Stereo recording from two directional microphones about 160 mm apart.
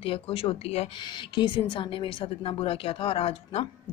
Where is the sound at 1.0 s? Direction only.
30° left (ahead or behind).